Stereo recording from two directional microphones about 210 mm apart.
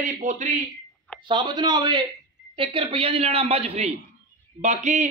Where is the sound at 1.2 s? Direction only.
20° right (ahead or behind).